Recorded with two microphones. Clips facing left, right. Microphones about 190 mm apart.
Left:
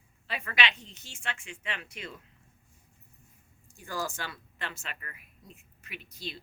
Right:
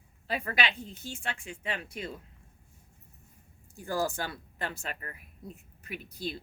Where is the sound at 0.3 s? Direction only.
40° right (ahead or behind).